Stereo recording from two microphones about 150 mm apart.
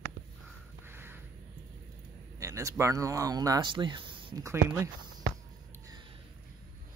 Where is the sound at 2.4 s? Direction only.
20° right (ahead or behind).